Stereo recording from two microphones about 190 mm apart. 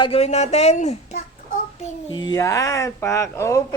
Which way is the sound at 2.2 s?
15° left (ahead or behind).